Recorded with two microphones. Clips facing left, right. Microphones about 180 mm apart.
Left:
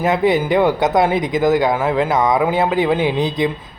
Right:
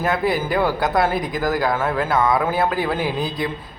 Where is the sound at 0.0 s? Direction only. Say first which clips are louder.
Left 5 dB; 20° left (ahead or behind).